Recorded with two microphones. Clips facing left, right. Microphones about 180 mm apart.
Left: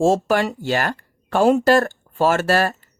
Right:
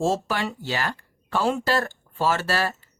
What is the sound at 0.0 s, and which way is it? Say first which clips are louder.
A woman's voice: left 7 dB; 50° left (ahead or behind).